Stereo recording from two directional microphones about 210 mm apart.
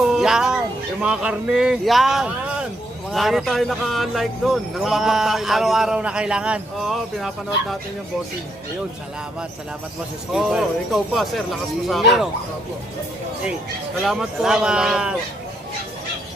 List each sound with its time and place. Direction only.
0.1 s music: centre (ahead or behind)
1.0 s speech: 5° right (ahead or behind)
10.3 s speech: centre (ahead or behind)
14.0 s speech: centre (ahead or behind)